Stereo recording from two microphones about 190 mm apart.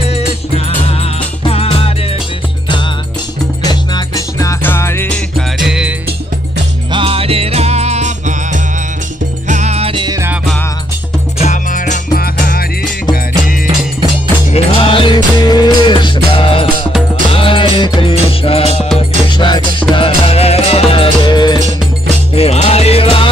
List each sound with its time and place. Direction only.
0.1 s music: 30° left (ahead or behind)
3.6 s music: 20° left (ahead or behind)
5.6 s music: 5° right (ahead or behind)
6.9 s music: 30° right (ahead or behind)
11.3 s music: 40° left (ahead or behind)
14.5 s music: 25° left (ahead or behind)